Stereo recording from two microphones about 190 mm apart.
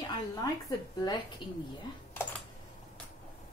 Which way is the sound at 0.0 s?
20° left (ahead or behind).